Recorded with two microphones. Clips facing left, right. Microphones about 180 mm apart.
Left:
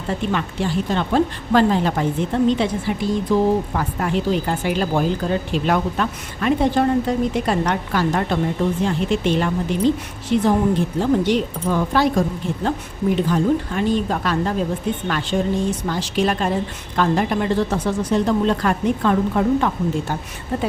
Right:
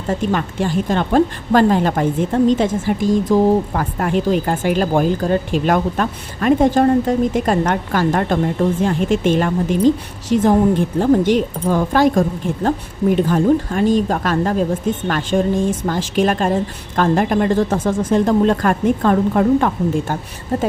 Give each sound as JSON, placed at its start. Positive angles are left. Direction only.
{"t": 0.1, "sound": "speech", "side_deg": -45}